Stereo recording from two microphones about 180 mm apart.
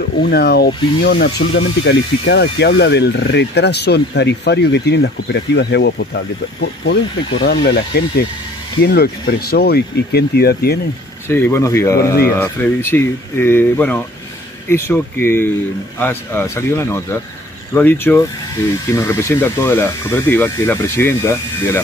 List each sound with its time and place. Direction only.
0.2 s speech: 65° left (ahead or behind)
1.0 s speech: 80° left; by 10.8 s 60° left (ahead or behind)
11.2 s speech: 15° left (ahead or behind)